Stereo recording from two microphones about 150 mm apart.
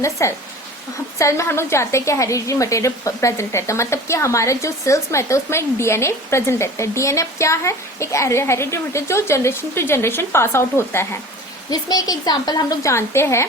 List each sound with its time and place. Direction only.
0.0 s a woman's voice: 20° left (ahead or behind)